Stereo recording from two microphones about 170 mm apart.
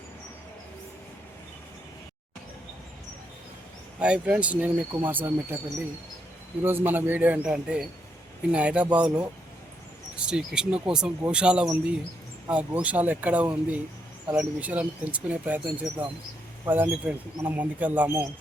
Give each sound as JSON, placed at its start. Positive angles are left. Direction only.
{"t": 4.0, "sound": "speech", "side_deg": -5}
{"t": 6.6, "sound": "speech", "side_deg": -10}